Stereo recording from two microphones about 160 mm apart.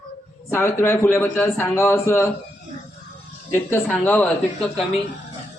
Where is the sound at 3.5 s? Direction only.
10° left (ahead or behind).